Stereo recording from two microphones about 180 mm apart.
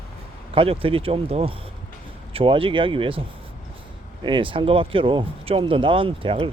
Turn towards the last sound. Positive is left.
turn(degrees=-30)  # may be behind; listen again after turning